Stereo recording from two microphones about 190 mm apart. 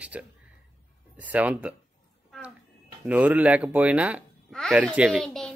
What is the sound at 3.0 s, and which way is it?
Speech, 10° right (ahead or behind).